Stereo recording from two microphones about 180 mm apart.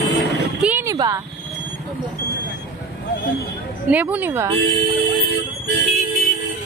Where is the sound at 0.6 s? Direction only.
10° right (ahead or behind).